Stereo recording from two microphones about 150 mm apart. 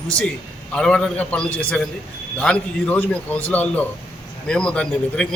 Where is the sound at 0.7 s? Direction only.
5° left (ahead or behind).